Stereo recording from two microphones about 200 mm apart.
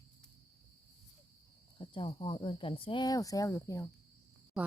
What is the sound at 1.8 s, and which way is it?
Speech, 25° left (ahead or behind).